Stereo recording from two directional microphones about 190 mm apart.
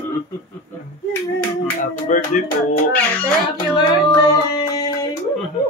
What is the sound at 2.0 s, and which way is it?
Speech, 40° left (ahead or behind).